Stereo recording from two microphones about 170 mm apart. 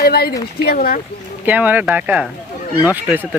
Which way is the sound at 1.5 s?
10° right (ahead or behind).